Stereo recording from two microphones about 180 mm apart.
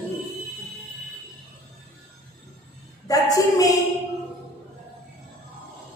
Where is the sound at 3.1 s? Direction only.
20° left (ahead or behind).